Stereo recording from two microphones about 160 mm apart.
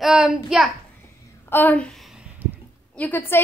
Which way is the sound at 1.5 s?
10° left (ahead or behind).